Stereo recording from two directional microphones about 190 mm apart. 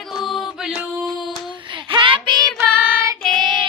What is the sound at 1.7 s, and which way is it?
Child singing, 25° right (ahead or behind).